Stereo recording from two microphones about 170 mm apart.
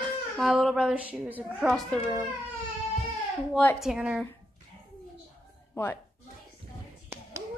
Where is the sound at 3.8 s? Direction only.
5° right (ahead or behind).